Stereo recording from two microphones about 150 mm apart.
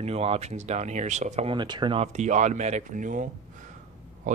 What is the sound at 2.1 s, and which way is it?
Speech, 50° right (ahead or behind).